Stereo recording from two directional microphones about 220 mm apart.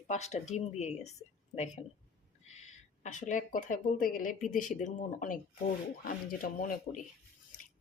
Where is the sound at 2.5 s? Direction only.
30° left (ahead or behind).